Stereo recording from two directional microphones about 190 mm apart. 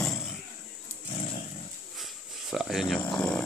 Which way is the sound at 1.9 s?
Centre (ahead or behind).